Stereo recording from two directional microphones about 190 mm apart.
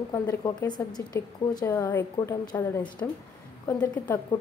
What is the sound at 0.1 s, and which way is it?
Speech, 15° left (ahead or behind).